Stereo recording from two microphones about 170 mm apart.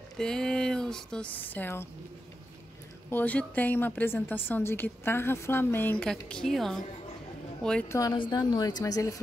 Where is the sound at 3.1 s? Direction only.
10° left (ahead or behind).